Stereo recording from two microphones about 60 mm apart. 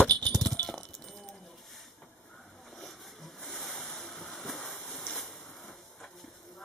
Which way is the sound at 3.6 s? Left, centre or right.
Centre.